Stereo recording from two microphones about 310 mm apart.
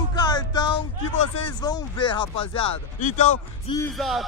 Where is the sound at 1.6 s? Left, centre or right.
Centre.